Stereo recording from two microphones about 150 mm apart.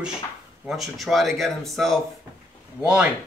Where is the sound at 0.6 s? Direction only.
Centre (ahead or behind).